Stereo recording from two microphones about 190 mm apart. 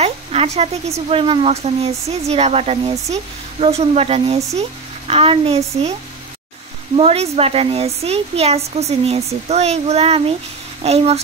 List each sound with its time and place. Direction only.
0.0 s speech: 35° right (ahead or behind)
7.0 s speech: 30° right (ahead or behind)